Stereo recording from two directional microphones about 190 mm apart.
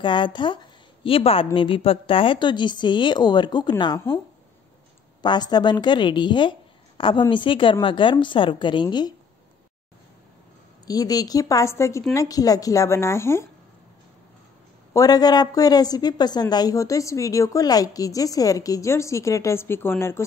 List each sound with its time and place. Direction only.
0.0 s a woman's voice: 25° left (ahead or behind)
5.2 s a woman's voice: 20° left (ahead or behind)
10.9 s a woman's voice: 20° left (ahead or behind)
15.0 s a woman's voice: 20° left (ahead or behind)